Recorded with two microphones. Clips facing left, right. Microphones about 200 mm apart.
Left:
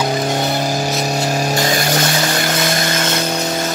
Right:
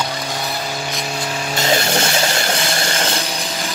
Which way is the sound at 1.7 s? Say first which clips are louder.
Left 1 dB; 25° right (ahead or behind).